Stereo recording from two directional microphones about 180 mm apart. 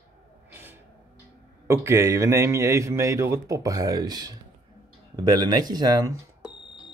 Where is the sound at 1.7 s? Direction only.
15° right (ahead or behind).